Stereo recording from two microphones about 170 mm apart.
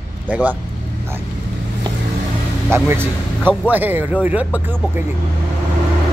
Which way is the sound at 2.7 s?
15° right (ahead or behind).